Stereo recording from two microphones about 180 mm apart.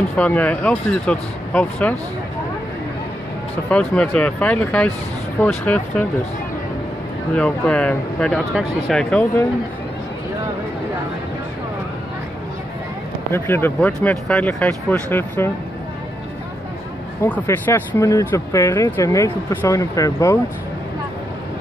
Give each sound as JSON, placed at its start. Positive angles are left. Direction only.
{"t": 0.1, "sound": "speech", "side_deg": 10}
{"t": 3.7, "sound": "speech", "side_deg": 5}
{"t": 7.3, "sound": "speech", "side_deg": 5}
{"t": 13.3, "sound": "speech", "side_deg": 10}
{"t": 17.2, "sound": "speech", "side_deg": 10}